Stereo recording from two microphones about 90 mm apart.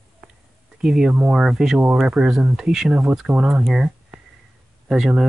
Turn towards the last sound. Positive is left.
turn(degrees=-5)  # may be behind; listen again after turning